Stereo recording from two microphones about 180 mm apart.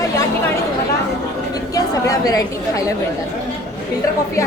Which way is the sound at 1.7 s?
20° left (ahead or behind).